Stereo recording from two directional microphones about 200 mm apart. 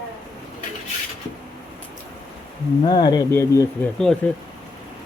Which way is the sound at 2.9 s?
20° left (ahead or behind).